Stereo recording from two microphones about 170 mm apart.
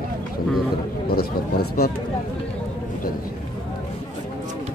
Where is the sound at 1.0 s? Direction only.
65° left (ahead or behind).